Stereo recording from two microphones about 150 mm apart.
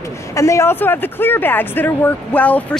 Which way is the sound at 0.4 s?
20° left (ahead or behind).